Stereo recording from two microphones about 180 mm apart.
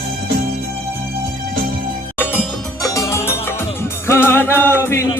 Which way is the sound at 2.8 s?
20° left (ahead or behind).